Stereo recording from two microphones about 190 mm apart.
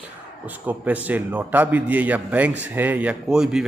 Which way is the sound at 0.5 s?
10° right (ahead or behind).